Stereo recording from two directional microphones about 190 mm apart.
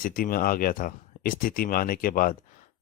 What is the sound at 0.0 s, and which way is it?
Speech, 50° left (ahead or behind).